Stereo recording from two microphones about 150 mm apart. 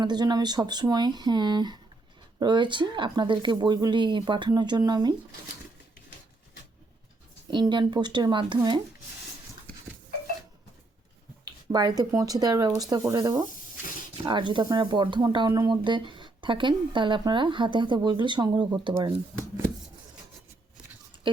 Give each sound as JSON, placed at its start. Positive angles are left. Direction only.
{"t": 0.0, "sound": "speech", "side_deg": -30}
{"t": 7.5, "sound": "speech", "side_deg": -30}
{"t": 11.4, "sound": "speech", "side_deg": -30}